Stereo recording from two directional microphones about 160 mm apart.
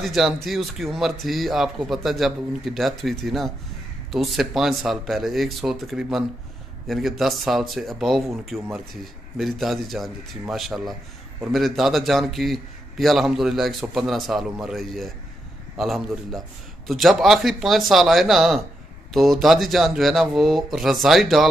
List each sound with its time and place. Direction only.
0.0 s a man's voice: centre (ahead or behind)